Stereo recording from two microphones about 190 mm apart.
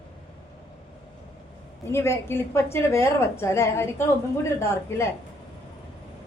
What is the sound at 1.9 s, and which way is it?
A woman's voice, 15° left (ahead or behind).